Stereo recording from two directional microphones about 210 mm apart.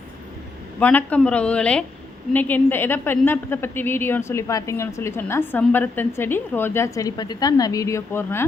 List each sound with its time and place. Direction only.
0.8 s a woman's voice: 5° left (ahead or behind)